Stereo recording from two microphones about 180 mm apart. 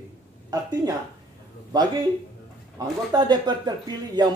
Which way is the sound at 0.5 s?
20° right (ahead or behind).